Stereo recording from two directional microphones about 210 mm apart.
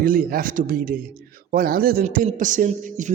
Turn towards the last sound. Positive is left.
turn(degrees=-35)  # may be behind; listen again after turning